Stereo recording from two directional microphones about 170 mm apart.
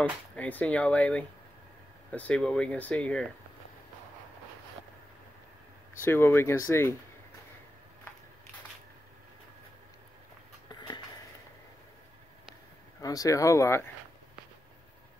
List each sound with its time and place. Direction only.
0.4 s speech: 10° left (ahead or behind)
6.0 s speech: 15° left (ahead or behind)
10.7 s a sound: 25° left (ahead or behind)
13.0 s speech: 20° left (ahead or behind)